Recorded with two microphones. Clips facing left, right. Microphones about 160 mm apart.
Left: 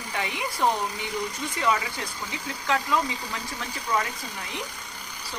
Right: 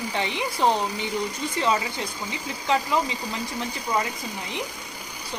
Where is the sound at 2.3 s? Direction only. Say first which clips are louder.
Right 3 dB; 15° right (ahead or behind).